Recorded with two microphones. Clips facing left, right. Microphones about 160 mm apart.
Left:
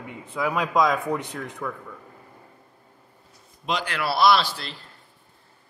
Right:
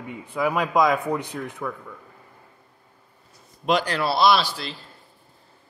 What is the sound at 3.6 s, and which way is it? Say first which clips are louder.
Speech: right 6 dB; 50° right (ahead or behind).